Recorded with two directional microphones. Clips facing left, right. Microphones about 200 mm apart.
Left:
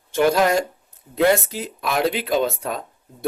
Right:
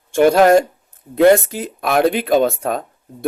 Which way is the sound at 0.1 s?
50° right (ahead or behind).